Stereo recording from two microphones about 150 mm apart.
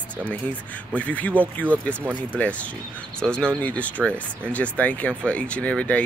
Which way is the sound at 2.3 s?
10° left (ahead or behind).